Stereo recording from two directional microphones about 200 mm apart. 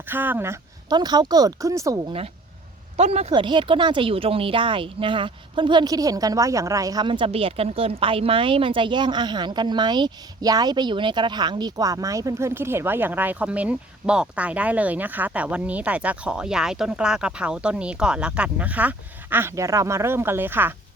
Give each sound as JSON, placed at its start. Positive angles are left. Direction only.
{"t": 0.0, "sound": "speech", "side_deg": -10}
{"t": 3.0, "sound": "speech", "side_deg": -30}